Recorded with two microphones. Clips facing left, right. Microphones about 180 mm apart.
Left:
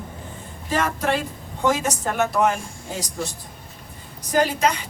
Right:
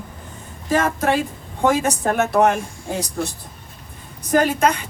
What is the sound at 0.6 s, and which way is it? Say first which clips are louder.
A woman's voice: right 4 dB; 50° right (ahead or behind).